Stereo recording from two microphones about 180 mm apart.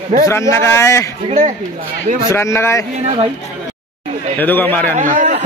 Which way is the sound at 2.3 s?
15° left (ahead or behind).